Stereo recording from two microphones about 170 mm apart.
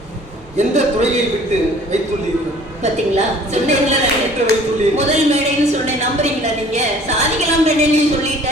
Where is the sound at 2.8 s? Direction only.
40° right (ahead or behind).